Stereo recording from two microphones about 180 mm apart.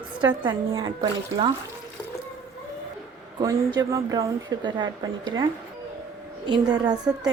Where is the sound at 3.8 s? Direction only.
20° right (ahead or behind).